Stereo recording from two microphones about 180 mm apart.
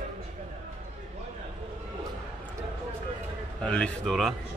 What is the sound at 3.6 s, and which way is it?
Speech, 5° left (ahead or behind).